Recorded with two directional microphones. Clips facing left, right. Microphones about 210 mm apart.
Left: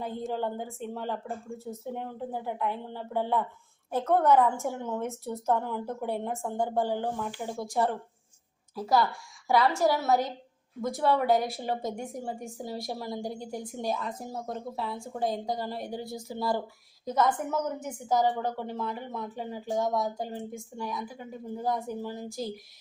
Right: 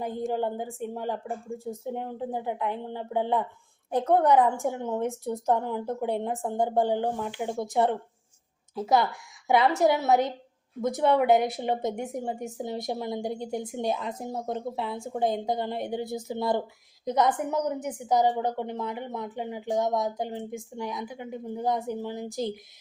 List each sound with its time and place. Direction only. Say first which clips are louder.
0.0 s a woman's voice: right 3 dB; 15° right (ahead or behind)